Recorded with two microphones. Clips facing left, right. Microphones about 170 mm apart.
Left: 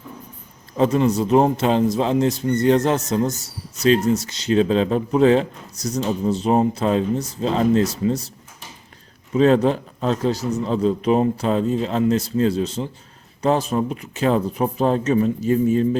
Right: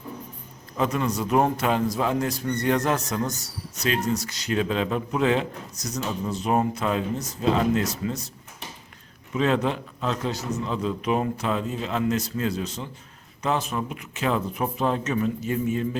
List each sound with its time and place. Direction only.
0.8 s a man's voice: 30° left (ahead or behind)
9.3 s a man's voice: 35° left (ahead or behind)